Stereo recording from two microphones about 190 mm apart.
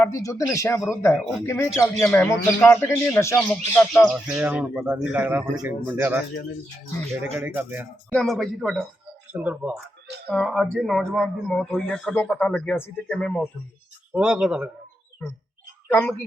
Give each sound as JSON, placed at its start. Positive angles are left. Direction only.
{"t": 0.0, "sound": "speech", "side_deg": 15}
{"t": 4.1, "sound": "a man's voice", "side_deg": -5}
{"t": 7.3, "sound": "a man's voice", "side_deg": -10}
{"t": 8.1, "sound": "a man's voice", "side_deg": 0}
{"t": 15.9, "sound": "speech", "side_deg": 10}